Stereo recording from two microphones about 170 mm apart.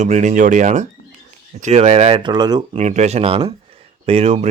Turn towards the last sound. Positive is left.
turn(degrees=-35)  # may be behind; listen again after turning